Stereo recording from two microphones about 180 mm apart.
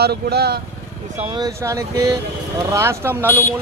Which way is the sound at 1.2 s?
30° right (ahead or behind).